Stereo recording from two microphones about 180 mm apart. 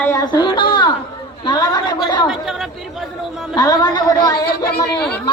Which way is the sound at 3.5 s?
20° left (ahead or behind).